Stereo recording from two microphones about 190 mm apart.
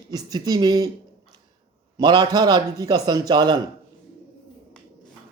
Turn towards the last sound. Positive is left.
turn(degrees=-25)  # may be behind; listen again after turning